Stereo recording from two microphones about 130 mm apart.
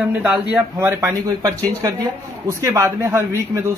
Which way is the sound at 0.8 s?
25° right (ahead or behind).